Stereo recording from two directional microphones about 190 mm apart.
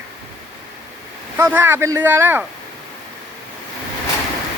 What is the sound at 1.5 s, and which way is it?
Speech, 10° right (ahead or behind).